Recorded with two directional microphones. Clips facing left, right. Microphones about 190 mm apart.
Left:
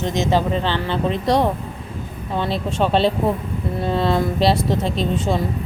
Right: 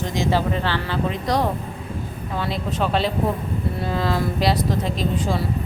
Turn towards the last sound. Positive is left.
turn(degrees=25)  # may be behind; listen again after turning